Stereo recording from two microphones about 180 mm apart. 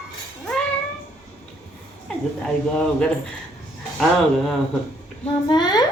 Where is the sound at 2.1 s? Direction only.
5° left (ahead or behind).